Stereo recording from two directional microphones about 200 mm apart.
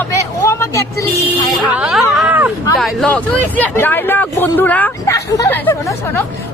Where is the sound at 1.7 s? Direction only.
5° right (ahead or behind).